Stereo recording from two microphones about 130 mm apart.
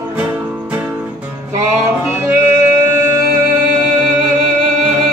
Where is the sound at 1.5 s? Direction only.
20° right (ahead or behind).